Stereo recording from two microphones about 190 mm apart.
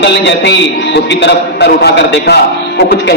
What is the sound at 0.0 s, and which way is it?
A man's voice, 65° left (ahead or behind).